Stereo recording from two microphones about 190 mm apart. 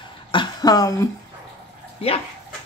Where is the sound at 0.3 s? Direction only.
25° left (ahead or behind).